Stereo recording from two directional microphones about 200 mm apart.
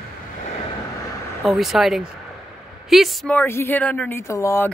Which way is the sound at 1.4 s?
Centre (ahead or behind).